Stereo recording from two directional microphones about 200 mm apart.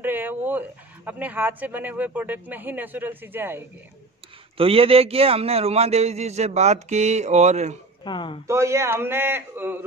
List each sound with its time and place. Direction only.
0.0 s speech: 10° right (ahead or behind)
4.6 s a man's voice: 30° right (ahead or behind)
8.0 s speech: 25° left (ahead or behind)
8.5 s speech: 15° right (ahead or behind)